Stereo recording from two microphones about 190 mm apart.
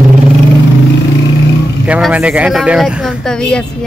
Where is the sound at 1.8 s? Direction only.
5° right (ahead or behind).